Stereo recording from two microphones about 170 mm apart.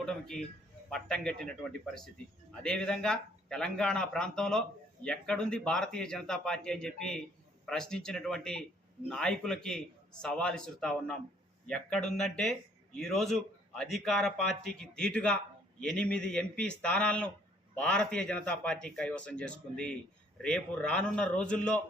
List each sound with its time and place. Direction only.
0.0 s a man's voice: 5° left (ahead or behind)